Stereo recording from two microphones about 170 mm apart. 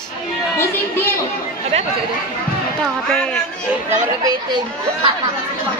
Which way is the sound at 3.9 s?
20° right (ahead or behind).